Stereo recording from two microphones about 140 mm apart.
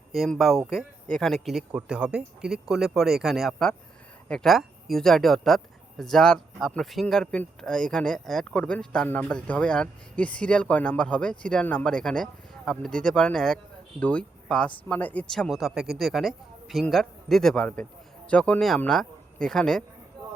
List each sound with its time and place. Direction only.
0.1 s speech: centre (ahead or behind)